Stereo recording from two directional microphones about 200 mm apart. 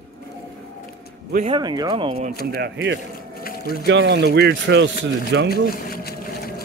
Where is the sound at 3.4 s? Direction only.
50° left (ahead or behind).